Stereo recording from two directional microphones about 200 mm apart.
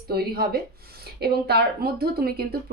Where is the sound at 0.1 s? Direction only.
50° right (ahead or behind).